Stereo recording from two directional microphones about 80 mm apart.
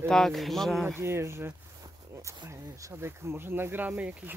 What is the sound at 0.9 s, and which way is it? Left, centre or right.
Speech, right.